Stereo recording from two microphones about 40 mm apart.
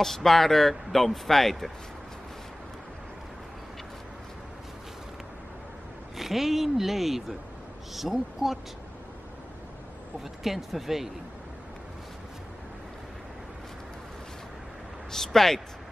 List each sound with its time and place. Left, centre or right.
0.0 s speech: centre
6.1 s speech: centre
10.4 s speech: centre
15.0 s speech: centre